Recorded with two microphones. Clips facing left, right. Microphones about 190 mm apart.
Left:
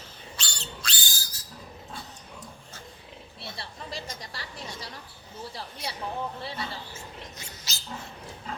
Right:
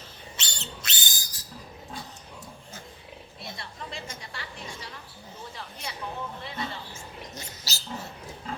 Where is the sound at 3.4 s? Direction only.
35° left (ahead or behind).